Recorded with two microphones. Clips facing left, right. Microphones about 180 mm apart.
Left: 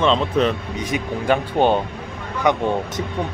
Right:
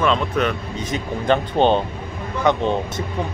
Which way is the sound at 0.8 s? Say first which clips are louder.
Left 1 dB; 15° left (ahead or behind).